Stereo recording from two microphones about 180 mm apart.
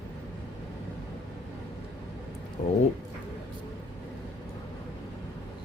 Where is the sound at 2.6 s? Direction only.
35° left (ahead or behind).